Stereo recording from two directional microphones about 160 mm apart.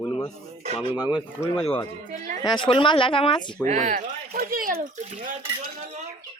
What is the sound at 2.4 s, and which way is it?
Speech, 30° left (ahead or behind).